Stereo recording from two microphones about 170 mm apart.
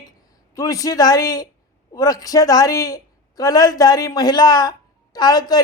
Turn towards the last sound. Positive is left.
turn(degrees=25)  # may be behind; listen again after turning